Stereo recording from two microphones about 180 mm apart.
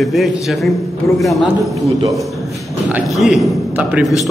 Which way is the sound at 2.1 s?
Centre (ahead or behind).